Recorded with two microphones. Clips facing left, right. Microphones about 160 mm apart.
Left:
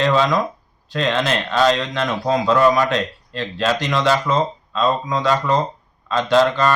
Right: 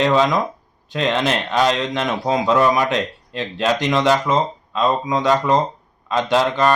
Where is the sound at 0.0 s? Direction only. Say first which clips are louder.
Right 1 dB; 15° right (ahead or behind).